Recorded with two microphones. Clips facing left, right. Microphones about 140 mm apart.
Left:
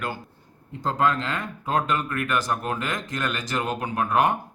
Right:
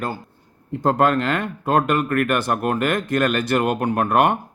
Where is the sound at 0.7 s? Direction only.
60° right (ahead or behind).